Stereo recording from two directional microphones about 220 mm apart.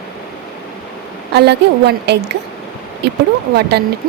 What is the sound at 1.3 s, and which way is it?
A woman's voice, 50° right (ahead or behind).